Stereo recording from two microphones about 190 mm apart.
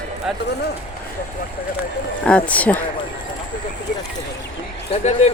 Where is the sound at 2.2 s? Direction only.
5° left (ahead or behind).